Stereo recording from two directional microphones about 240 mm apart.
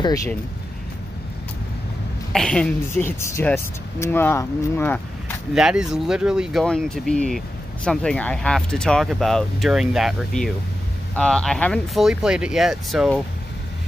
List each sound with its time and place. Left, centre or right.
0.0 s speech: centre
2.3 s speech: centre
5.5 s speech: centre